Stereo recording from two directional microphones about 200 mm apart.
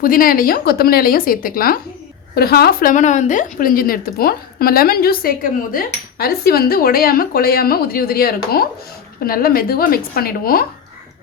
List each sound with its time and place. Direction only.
0.0 s a woman's voice: 45° left (ahead or behind)